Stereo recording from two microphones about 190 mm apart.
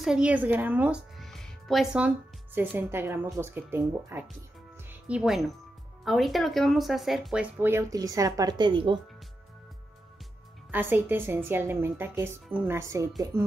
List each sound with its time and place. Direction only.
0.0 s speech: 5° right (ahead or behind); by 9.0 s 25° right (ahead or behind)
10.7 s speech: 10° right (ahead or behind)